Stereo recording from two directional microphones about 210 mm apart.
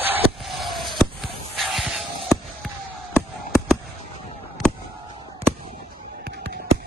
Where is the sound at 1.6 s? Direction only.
Centre (ahead or behind).